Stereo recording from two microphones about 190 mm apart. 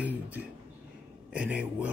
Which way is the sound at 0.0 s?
10° right (ahead or behind).